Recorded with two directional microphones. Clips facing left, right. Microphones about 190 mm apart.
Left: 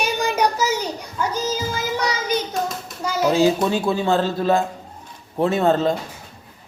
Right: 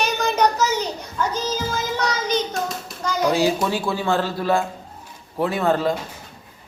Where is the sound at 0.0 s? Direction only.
10° left (ahead or behind).